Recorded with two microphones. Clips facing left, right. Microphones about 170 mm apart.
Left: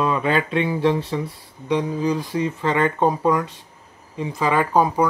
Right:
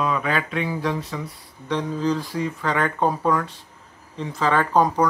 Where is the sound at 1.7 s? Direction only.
15° left (ahead or behind).